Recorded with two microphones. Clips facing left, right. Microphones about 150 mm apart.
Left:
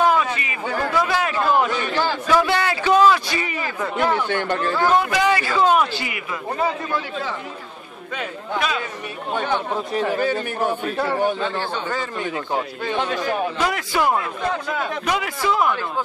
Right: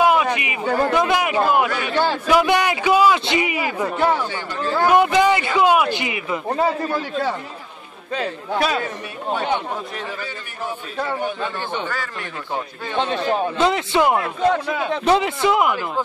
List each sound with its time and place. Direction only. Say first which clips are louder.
0.0 s a sound: right 2 dB; 15° right (ahead or behind)
0.9 s a man's voice: right 3 dB; 20° right (ahead or behind)
4.3 s speech: left 7 dB; 65° left (ahead or behind)
4.8 s a man's voice: right 4 dB; 20° right (ahead or behind)
6.5 s a man's voice: right 2 dB; 35° right (ahead or behind)
10.1 s a man's voice: left 10 dB; 50° left (ahead or behind)
12.9 s a man's voice: right 3 dB; 25° right (ahead or behind)